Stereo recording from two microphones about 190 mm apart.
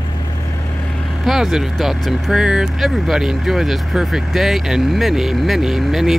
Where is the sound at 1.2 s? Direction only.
Centre (ahead or behind).